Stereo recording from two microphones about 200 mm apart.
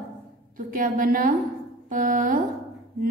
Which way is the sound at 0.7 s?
45° right (ahead or behind).